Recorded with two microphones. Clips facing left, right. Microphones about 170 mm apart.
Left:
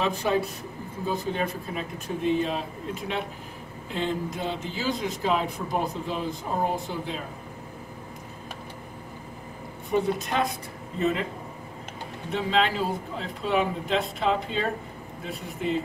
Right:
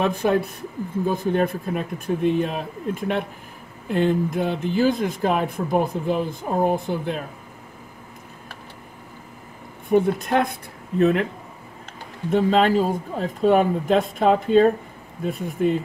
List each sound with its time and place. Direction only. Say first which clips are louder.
0.0 s speech: right 5 dB; 55° right (ahead or behind)
9.8 s speech: right 6 dB; 55° right (ahead or behind)
12.3 s speech: right 7 dB; 45° right (ahead or behind)